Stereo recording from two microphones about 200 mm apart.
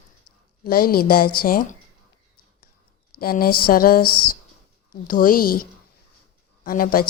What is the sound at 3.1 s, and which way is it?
Speech, 50° left (ahead or behind).